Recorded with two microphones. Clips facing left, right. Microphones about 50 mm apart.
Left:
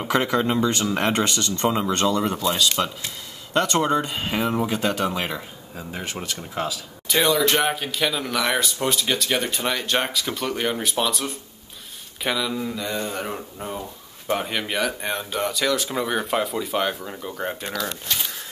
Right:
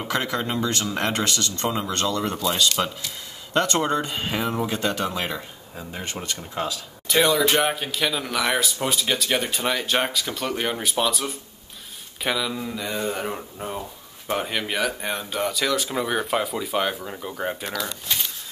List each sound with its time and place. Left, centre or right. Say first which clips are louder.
0.1 s speech: left 5 dB; centre
1.1 s speech: left 2 dB; left
2.8 s speech: left 1 dB; centre